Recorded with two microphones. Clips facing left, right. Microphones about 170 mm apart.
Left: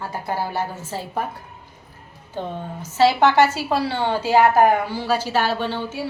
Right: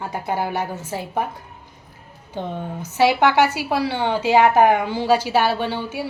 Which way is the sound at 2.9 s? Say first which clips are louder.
Left 1 dB; 15° right (ahead or behind).